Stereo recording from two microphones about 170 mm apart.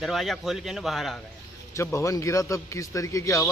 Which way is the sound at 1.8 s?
15° left (ahead or behind).